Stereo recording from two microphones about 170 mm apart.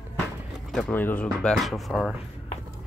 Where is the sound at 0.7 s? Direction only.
5° left (ahead or behind).